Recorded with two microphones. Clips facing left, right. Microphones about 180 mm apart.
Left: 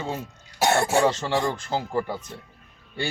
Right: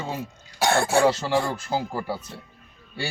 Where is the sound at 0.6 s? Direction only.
20° left (ahead or behind).